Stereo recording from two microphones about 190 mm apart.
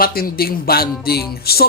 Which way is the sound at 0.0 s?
50° left (ahead or behind).